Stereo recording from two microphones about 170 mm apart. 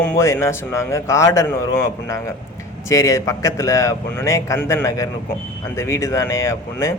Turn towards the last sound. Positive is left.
turn(degrees=15)  # may be behind; listen again after turning